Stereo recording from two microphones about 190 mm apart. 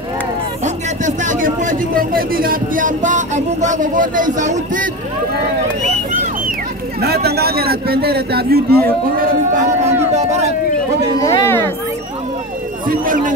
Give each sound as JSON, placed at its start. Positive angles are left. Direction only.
{"t": 1.0, "sound": "speech", "side_deg": -40}
{"t": 7.2, "sound": "a man's voice", "side_deg": -55}
{"t": 10.1, "sound": "speech", "side_deg": -35}
{"t": 11.1, "sound": "speech", "side_deg": 15}
{"t": 12.8, "sound": "speech", "side_deg": -45}